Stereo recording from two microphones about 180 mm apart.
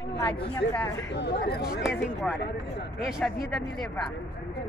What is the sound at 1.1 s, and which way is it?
Speech, 65° left (ahead or behind).